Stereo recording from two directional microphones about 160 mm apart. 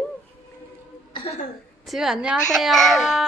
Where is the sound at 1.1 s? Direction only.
35° left (ahead or behind).